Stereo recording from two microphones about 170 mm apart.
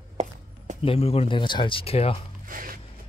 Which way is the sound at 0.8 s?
35° left (ahead or behind).